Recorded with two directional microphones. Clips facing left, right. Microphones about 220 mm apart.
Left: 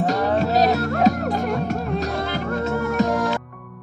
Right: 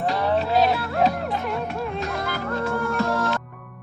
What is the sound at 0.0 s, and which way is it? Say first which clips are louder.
Music: left 3 dB; 45° left (ahead or behind).